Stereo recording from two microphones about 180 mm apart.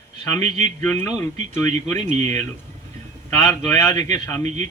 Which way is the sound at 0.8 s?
15° left (ahead or behind).